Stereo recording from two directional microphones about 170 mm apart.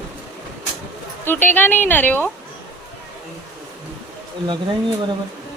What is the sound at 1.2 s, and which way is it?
A woman's voice, 10° left (ahead or behind).